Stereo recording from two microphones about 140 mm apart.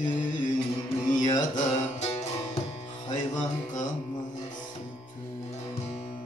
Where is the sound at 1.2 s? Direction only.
60° left (ahead or behind).